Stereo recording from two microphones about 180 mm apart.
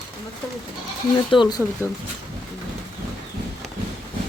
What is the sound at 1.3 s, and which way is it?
Speech, 25° left (ahead or behind).